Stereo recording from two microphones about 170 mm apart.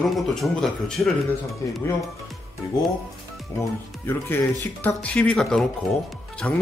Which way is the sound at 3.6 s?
15° left (ahead or behind).